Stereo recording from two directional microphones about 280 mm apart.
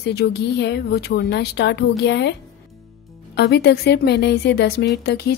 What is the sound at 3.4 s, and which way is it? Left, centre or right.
Speech, left.